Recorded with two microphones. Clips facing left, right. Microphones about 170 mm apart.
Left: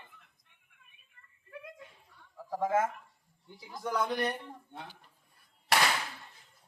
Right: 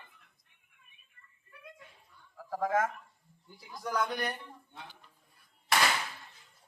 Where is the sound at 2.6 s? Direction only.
25° left (ahead or behind).